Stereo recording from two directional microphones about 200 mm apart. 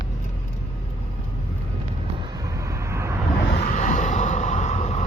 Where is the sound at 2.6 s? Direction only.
15° right (ahead or behind).